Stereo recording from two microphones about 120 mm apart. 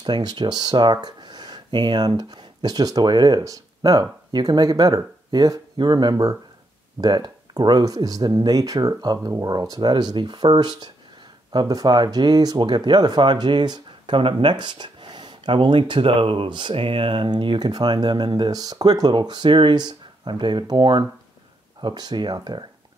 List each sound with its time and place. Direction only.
0.0 s speech: 35° right (ahead or behind)